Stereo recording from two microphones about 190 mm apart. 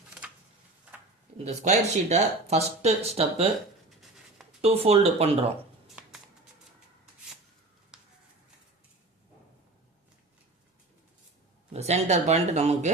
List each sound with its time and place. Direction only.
1.5 s speech: 40° right (ahead or behind)
4.6 s speech: 30° right (ahead or behind)
6.0 s music: 5° right (ahead or behind)
7.9 s a sound: 5° right (ahead or behind)
11.7 s speech: 35° right (ahead or behind)